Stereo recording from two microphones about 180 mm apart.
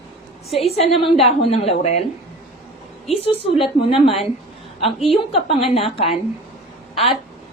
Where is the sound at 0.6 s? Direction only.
35° left (ahead or behind).